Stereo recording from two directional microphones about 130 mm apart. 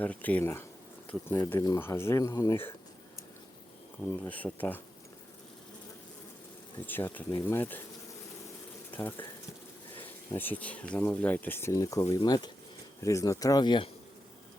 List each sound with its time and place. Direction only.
0.0 s speech: 10° left (ahead or behind)
4.2 s speech: 10° left (ahead or behind)
6.8 s speech: 15° left (ahead or behind)
8.9 s speech: 15° left (ahead or behind)
10.3 s speech: 15° left (ahead or behind); by 13.9 s 35° left (ahead or behind)